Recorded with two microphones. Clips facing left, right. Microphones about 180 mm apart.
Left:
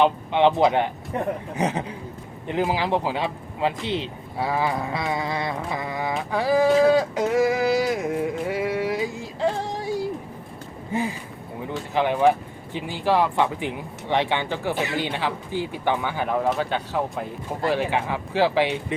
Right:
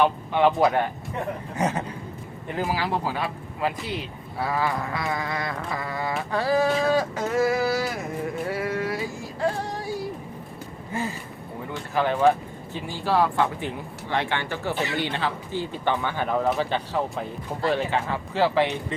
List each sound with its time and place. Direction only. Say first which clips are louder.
0.0 s speech: left 2 dB; 20° left (ahead or behind)
6.8 s a sound: left 4 dB; 15° left (ahead or behind)
11.9 s speech: left 1 dB; 15° left (ahead or behind)